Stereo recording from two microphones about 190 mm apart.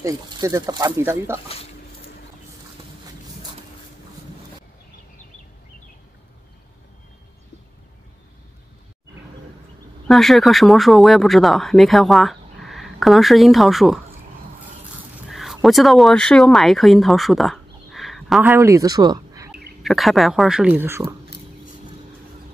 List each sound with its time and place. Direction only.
0.0 s speech: 15° right (ahead or behind)
10.0 s speech: centre (ahead or behind)
15.2 s speech: centre (ahead or behind)
18.5 s speech: 15° right (ahead or behind)
19.8 s speech: centre (ahead or behind)